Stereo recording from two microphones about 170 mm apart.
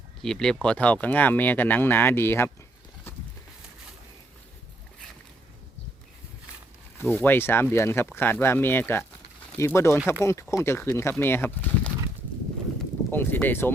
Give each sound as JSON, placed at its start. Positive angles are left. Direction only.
{"t": 0.2, "sound": "speech", "side_deg": 5}
{"t": 7.0, "sound": "speech", "side_deg": 10}
{"t": 13.1, "sound": "speech", "side_deg": 10}